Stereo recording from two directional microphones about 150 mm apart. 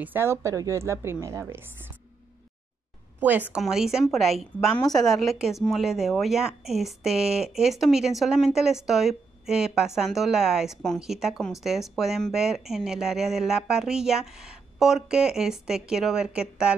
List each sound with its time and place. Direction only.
0.0 s a woman's voice: 15° right (ahead or behind)
3.2 s speech: 10° right (ahead or behind)